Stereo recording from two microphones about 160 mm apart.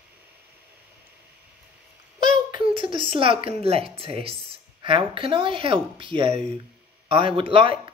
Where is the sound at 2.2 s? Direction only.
30° right (ahead or behind).